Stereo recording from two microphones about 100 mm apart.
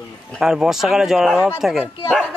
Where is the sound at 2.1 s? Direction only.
10° left (ahead or behind).